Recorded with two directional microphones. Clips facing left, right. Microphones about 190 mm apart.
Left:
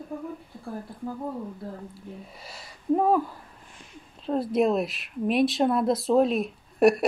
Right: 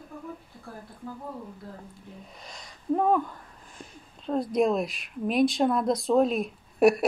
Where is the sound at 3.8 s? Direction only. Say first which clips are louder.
Right 10 dB; 40° right (ahead or behind).